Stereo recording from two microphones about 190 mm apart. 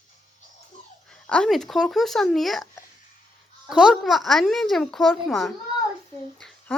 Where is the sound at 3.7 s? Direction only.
5° right (ahead or behind).